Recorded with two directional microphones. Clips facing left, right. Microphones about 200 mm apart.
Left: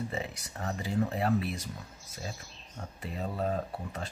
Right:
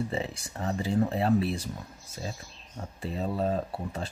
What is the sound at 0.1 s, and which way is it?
Speech, 30° right (ahead or behind).